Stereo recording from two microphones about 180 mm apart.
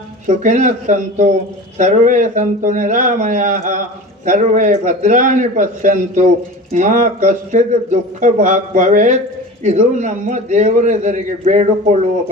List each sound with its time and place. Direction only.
0.3 s a man's voice: 45° right (ahead or behind)